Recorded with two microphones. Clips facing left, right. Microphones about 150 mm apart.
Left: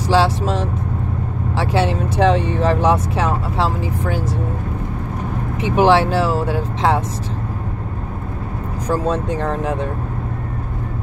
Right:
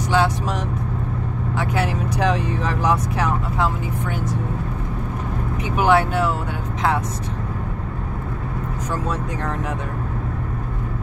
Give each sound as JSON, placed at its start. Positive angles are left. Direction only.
{"t": 0.1, "sound": "speech", "side_deg": 30}
{"t": 5.6, "sound": "speech", "side_deg": 30}
{"t": 8.8, "sound": "speech", "side_deg": 30}